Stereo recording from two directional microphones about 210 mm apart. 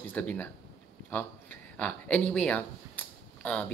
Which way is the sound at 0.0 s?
5° left (ahead or behind).